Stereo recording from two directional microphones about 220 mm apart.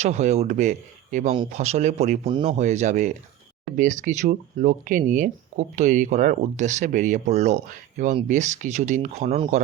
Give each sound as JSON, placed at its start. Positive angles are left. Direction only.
{"t": 0.0, "sound": "speech", "side_deg": -30}